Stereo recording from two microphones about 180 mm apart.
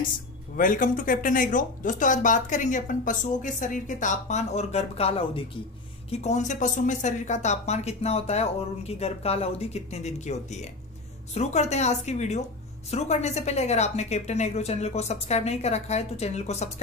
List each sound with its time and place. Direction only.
0.6 s a woman's voice: 45° left (ahead or behind)